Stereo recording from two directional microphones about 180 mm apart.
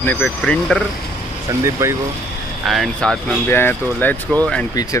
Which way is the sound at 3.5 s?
10° left (ahead or behind).